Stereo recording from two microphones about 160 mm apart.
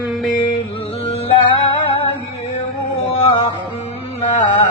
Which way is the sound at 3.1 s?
40° left (ahead or behind).